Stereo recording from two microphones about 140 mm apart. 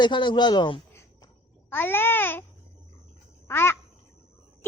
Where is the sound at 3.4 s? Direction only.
15° left (ahead or behind).